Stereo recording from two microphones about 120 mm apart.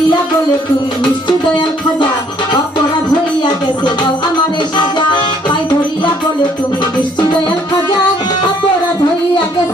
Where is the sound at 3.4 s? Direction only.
35° left (ahead or behind).